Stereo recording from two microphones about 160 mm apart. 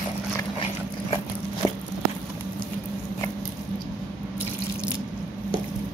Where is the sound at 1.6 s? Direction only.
25° left (ahead or behind).